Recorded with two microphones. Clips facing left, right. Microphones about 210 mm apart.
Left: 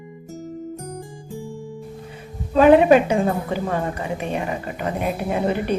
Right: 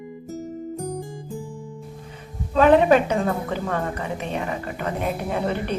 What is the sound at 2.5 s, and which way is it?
A woman's voice, 10° left (ahead or behind).